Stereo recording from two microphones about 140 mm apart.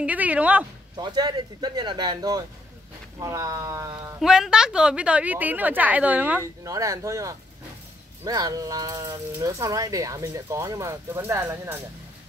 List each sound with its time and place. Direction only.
0.0 s a woman's voice: 10° right (ahead or behind)
0.9 s speech: 30° right (ahead or behind)
4.2 s a woman's voice: 5° right (ahead or behind)
6.4 s speech: 20° right (ahead or behind)